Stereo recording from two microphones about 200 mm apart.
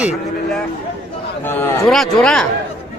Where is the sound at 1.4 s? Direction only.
10° left (ahead or behind).